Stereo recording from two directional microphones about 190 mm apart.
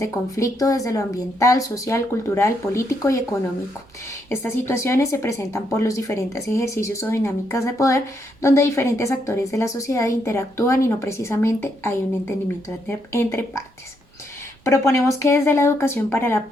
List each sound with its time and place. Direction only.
0.0 s speech: 15° left (ahead or behind)
4.3 s speech: 10° left (ahead or behind)